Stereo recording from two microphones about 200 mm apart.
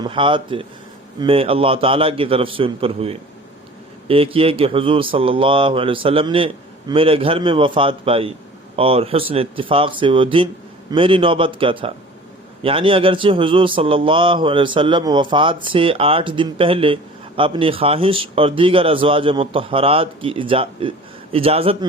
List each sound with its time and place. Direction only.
0.0 s speech: 25° right (ahead or behind)